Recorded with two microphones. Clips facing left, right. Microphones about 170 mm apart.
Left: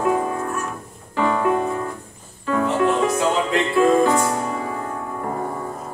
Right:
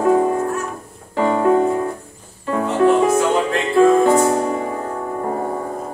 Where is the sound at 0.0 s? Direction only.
30° right (ahead or behind).